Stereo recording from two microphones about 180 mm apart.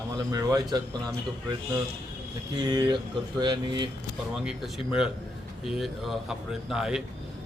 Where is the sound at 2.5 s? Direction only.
25° right (ahead or behind).